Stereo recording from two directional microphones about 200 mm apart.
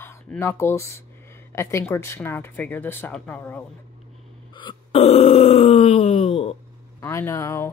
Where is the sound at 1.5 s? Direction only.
10° left (ahead or behind).